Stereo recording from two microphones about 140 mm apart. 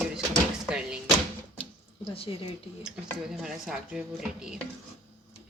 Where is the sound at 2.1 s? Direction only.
45° left (ahead or behind).